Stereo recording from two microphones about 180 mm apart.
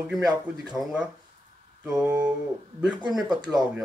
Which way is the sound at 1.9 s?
5° right (ahead or behind).